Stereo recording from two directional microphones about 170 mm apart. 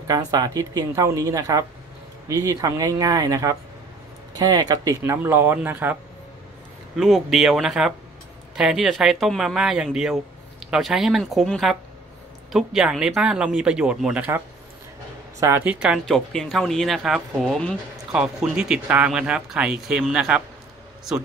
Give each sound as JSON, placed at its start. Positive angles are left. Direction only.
{"t": 0.0, "sound": "speech", "side_deg": -20}
{"t": 7.0, "sound": "speech", "side_deg": 0}
{"t": 15.4, "sound": "speech", "side_deg": -10}